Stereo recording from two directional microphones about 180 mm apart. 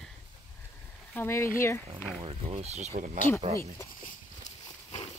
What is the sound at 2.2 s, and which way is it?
Speech, 35° right (ahead or behind).